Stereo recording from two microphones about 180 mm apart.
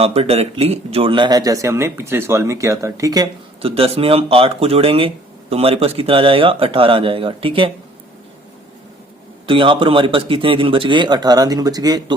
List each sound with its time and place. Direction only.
0.0 s speech: 35° right (ahead or behind)
3.6 s speech: 30° right (ahead or behind)
9.5 s speech: 30° right (ahead or behind)